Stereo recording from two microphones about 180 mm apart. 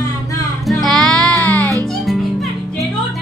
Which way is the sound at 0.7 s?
Centre (ahead or behind).